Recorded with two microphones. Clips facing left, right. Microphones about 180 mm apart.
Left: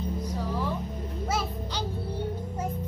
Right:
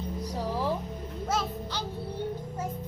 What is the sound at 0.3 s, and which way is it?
Music, 35° right (ahead or behind).